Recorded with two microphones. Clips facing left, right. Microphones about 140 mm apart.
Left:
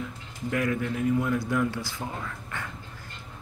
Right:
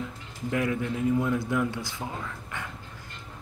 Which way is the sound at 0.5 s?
20° right (ahead or behind).